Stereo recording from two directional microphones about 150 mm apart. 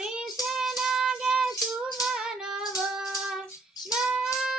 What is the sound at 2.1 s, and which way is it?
Child singing, 5° right (ahead or behind).